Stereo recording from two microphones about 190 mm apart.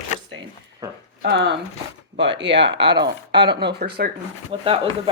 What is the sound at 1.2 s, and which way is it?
Speech, 60° right (ahead or behind).